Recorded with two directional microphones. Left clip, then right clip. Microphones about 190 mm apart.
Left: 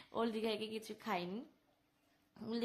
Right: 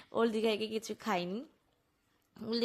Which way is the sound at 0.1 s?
30° right (ahead or behind).